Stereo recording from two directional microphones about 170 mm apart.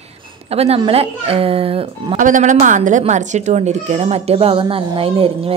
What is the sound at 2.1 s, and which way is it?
A woman's voice, 50° right (ahead or behind).